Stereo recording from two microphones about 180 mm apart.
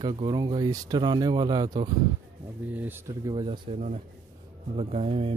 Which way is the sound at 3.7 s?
40° right (ahead or behind).